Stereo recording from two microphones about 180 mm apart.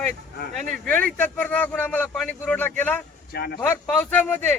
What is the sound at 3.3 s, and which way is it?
Speech, 60° left (ahead or behind).